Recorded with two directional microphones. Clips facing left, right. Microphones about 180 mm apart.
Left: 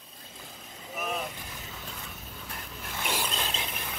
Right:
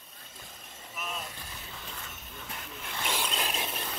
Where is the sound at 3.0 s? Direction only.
5° left (ahead or behind).